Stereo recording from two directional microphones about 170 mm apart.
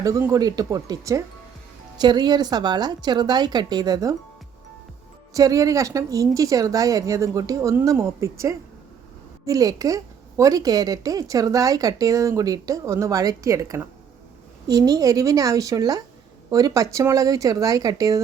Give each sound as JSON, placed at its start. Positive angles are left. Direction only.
{"t": 0.0, "sound": "a woman's voice", "side_deg": -20}
{"t": 5.3, "sound": "a woman's voice", "side_deg": -20}